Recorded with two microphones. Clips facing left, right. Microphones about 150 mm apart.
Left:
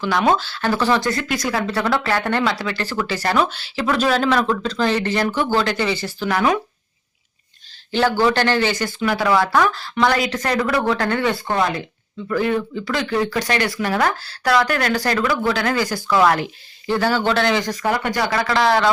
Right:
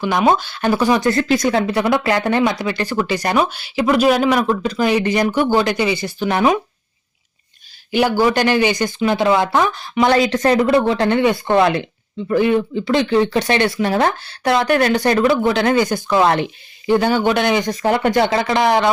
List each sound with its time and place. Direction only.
0.0 s speech: 15° right (ahead or behind)
1.1 s speech: 25° right (ahead or behind)
7.9 s speech: 15° right (ahead or behind)